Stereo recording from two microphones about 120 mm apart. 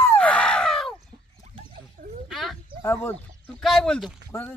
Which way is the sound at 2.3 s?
Centre (ahead or behind).